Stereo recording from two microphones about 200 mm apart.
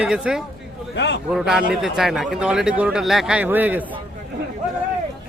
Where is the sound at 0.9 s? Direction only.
60° left (ahead or behind).